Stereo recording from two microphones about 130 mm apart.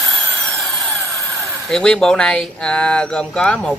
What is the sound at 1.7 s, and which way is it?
Speech, 5° left (ahead or behind).